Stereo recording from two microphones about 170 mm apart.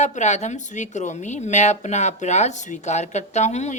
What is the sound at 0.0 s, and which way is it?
Speech, 45° left (ahead or behind).